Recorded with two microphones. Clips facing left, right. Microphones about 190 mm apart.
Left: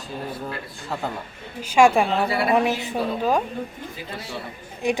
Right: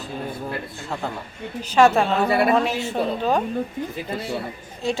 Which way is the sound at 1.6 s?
10° left (ahead or behind).